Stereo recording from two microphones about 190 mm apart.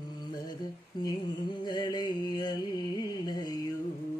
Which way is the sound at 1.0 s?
20° left (ahead or behind).